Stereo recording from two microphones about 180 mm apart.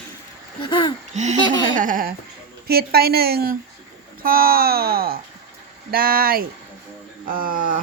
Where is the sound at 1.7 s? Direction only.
50° right (ahead or behind).